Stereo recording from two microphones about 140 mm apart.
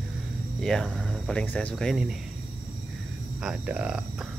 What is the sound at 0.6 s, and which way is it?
Speech, 5° left (ahead or behind).